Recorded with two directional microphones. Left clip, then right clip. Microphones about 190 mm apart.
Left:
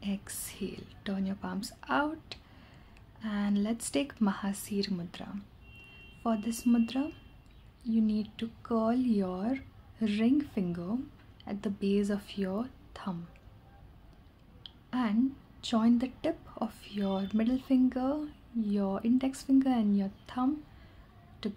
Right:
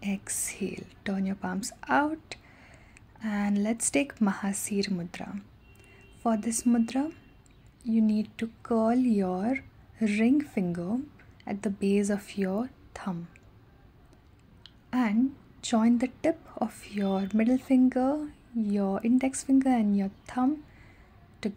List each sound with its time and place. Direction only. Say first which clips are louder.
0.0 s a woman's voice: right 5 dB; 20° right (ahead or behind)
14.9 s a woman's voice: right 3 dB; 20° right (ahead or behind)
21.4 s music: right 4 dB; 20° right (ahead or behind)